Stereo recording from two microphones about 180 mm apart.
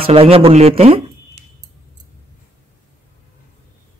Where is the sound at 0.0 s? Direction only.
30° right (ahead or behind).